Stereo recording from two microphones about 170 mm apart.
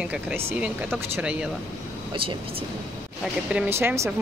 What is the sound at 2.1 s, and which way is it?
Speech, 30° right (ahead or behind).